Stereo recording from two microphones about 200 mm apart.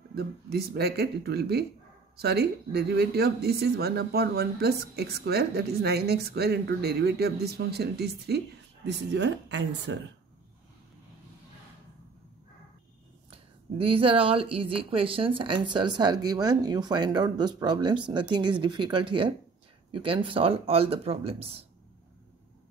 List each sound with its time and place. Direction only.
0.1 s speech: 50° right (ahead or behind)
13.3 s a woman's voice: 25° right (ahead or behind)